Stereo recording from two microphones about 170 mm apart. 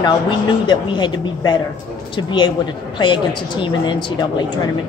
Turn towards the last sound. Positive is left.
turn(degrees=25)  # may be behind; listen again after turning